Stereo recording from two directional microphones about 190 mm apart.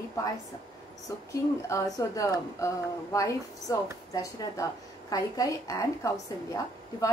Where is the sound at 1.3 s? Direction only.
15° left (ahead or behind).